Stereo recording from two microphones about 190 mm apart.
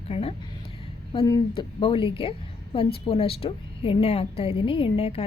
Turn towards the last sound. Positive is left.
turn(degrees=35)  # may be behind; listen again after turning